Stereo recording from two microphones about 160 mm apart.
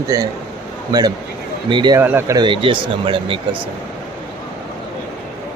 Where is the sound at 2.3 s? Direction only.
30° right (ahead or behind).